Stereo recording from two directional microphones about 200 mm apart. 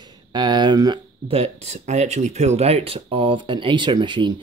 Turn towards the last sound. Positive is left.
turn(degrees=-25)  # may be behind; listen again after turning